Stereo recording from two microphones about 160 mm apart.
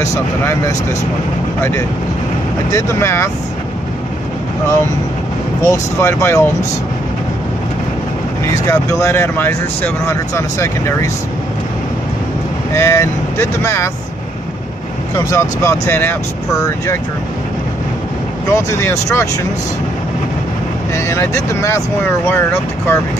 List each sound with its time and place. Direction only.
0.0 s speech: 20° left (ahead or behind)
5.7 s speech: 15° left (ahead or behind)
8.6 s speech: 15° left (ahead or behind)
12.7 s speech: 15° left (ahead or behind)
15.1 s speech: 15° left (ahead or behind)
18.5 s speech: 20° left (ahead or behind)
20.9 s speech: 20° left (ahead or behind)